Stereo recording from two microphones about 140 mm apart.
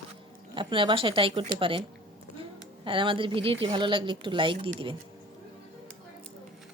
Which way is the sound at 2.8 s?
40° right (ahead or behind).